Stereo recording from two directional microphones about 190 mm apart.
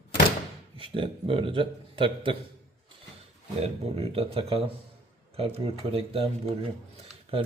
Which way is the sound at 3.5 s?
30° right (ahead or behind).